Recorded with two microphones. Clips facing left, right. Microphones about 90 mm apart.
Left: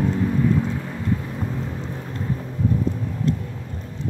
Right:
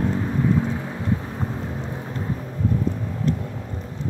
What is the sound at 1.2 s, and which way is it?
Vehicle, 20° right (ahead or behind).